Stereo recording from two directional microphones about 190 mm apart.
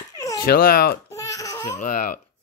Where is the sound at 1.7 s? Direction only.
45° left (ahead or behind).